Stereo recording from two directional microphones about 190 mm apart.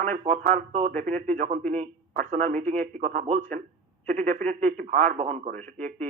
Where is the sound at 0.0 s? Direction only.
40° right (ahead or behind).